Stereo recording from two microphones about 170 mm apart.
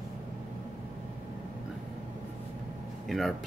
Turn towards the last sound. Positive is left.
turn(degrees=0)  # may be behind; listen again after turning